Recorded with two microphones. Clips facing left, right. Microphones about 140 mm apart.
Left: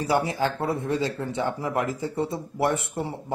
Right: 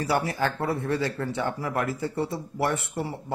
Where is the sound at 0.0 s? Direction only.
20° left (ahead or behind).